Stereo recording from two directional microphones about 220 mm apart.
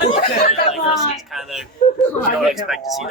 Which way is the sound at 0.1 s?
30° left (ahead or behind).